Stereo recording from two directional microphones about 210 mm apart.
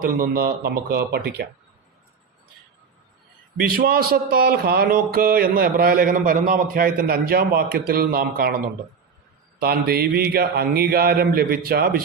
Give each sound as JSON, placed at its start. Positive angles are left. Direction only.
{"t": 0.0, "sound": "speech", "side_deg": -45}
{"t": 3.6, "sound": "speech", "side_deg": -45}
{"t": 9.6, "sound": "speech", "side_deg": -45}